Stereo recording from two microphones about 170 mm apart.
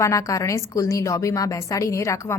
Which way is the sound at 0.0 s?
20° left (ahead or behind).